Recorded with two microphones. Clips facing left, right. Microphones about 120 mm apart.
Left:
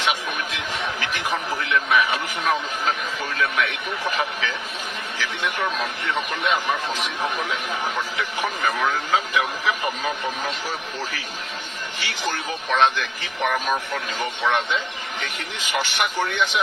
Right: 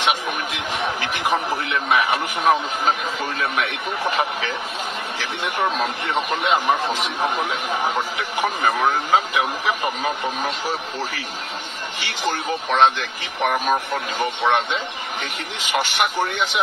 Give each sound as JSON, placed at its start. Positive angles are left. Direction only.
{"t": 0.8, "sound": "a sound", "side_deg": -15}
{"t": 6.1, "sound": "a man's voice", "side_deg": -15}
{"t": 12.0, "sound": "a man's voice", "side_deg": -15}